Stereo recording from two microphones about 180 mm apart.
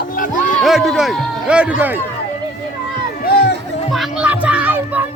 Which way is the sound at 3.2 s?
65° left (ahead or behind).